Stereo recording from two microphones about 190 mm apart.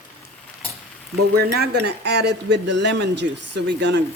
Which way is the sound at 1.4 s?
60° right (ahead or behind).